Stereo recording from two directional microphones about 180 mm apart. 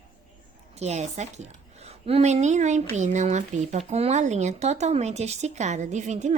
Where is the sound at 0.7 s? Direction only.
40° right (ahead or behind).